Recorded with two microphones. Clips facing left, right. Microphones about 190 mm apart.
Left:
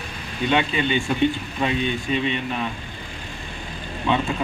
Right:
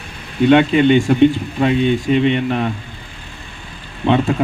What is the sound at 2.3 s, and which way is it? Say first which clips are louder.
Speech: right 8 dB; 60° right (ahead or behind).